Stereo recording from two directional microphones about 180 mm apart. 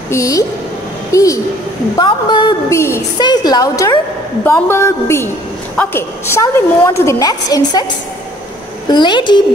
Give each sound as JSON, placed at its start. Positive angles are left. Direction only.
{"t": 0.1, "sound": "a woman's voice", "side_deg": 15}
{"t": 8.8, "sound": "a woman's voice", "side_deg": 25}